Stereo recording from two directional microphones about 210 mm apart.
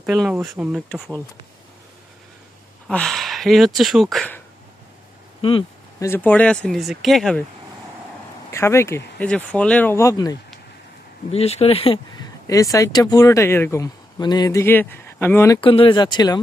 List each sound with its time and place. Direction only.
0.0 s speech: centre (ahead or behind)
2.8 s speech: centre (ahead or behind)
5.4 s a sound: 25° left (ahead or behind)
6.1 s speech: 10° left (ahead or behind)
8.5 s speech: 15° left (ahead or behind)
11.3 s speech: 30° left (ahead or behind)
12.5 s speech: 15° left (ahead or behind)
15.6 s speech: 25° left (ahead or behind)